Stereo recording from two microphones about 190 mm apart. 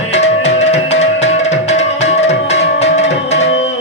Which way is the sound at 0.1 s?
35° left (ahead or behind).